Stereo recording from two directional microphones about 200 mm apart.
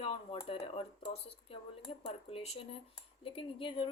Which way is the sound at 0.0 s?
25° left (ahead or behind).